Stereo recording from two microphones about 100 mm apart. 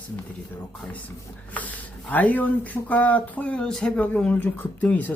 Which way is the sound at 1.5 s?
15° left (ahead or behind).